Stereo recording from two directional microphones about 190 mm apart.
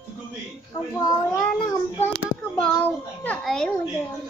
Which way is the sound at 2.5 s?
5° left (ahead or behind).